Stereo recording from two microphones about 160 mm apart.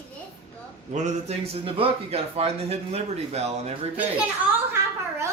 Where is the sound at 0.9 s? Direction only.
45° right (ahead or behind).